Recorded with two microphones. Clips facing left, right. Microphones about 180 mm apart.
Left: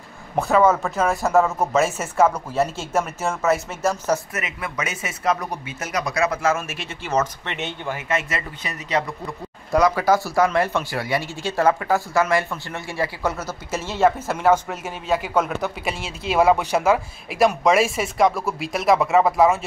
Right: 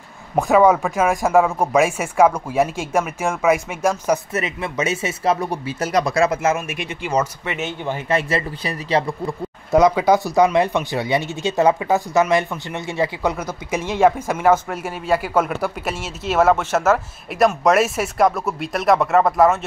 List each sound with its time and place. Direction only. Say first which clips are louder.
0.4 s speech: right 3 dB; 15° right (ahead or behind)
4.3 s speech: right 6 dB; 25° right (ahead or behind); by 7.9 s centre (ahead or behind)
7.9 s speech: right 5 dB; 30° right (ahead or behind); by 19.6 s centre (ahead or behind)